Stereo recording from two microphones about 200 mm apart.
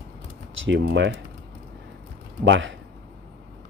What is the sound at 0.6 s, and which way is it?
Speech, 60° right (ahead or behind).